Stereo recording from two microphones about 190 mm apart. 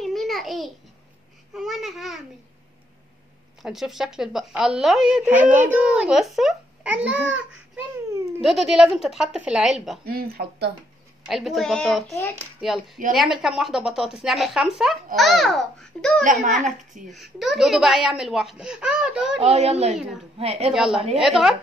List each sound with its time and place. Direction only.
0.0 s babbling: centre (ahead or behind)
1.5 s speech: centre (ahead or behind)
3.6 s speech: centre (ahead or behind)
10.0 s speech: 55° right (ahead or behind)
11.2 s speech: centre (ahead or behind)
19.4 s a child's voice: 35° right (ahead or behind)
20.7 s speech: centre (ahead or behind)